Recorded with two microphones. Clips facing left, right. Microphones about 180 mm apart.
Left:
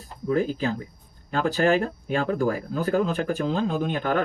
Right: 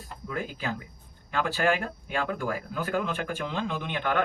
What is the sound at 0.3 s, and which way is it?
Speech, 35° left (ahead or behind).